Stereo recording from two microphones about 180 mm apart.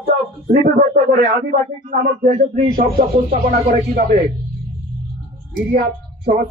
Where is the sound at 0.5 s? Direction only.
50° right (ahead or behind).